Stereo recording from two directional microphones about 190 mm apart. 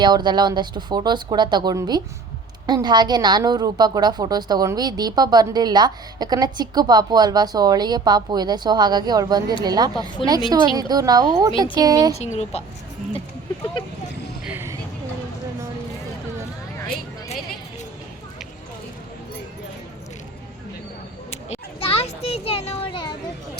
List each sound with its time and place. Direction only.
0.0 s a woman's voice: 25° right (ahead or behind)
10.2 s speech: 25° left (ahead or behind)
10.8 s a woman's voice: 20° right (ahead or behind)
12.2 s a woman's voice: 35° left (ahead or behind)
14.4 s vehicle: 10° right (ahead or behind)
21.2 s a sound: 30° left (ahead or behind)